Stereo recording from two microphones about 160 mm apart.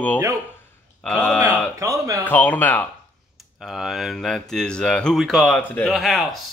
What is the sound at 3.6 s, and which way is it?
A man's voice, centre (ahead or behind).